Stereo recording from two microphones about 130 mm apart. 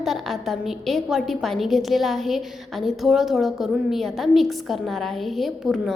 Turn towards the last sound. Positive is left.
turn(degrees=0)  # may be behind; listen again after turning